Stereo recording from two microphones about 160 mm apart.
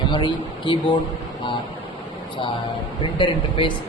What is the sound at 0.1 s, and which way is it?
Speech, 30° left (ahead or behind).